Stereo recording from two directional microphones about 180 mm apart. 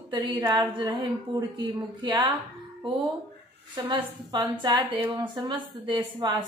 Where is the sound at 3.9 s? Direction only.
25° right (ahead or behind).